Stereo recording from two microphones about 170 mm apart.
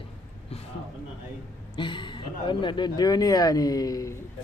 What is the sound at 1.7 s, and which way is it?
Speech, 25° left (ahead or behind).